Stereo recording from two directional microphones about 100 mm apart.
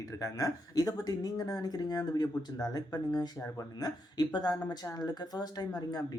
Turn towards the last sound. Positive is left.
turn(degrees=45)  # may be behind; listen again after turning